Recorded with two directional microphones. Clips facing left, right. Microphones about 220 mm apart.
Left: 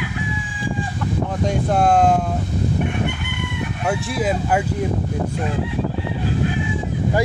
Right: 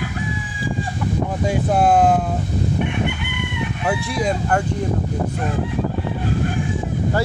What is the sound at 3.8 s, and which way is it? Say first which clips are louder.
Speech: even; centre (ahead or behind).